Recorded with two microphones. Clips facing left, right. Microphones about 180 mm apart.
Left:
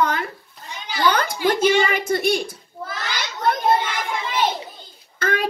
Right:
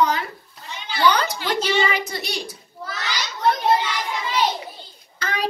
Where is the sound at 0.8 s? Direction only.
50° left (ahead or behind).